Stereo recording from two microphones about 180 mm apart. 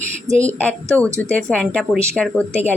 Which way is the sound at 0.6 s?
10° left (ahead or behind).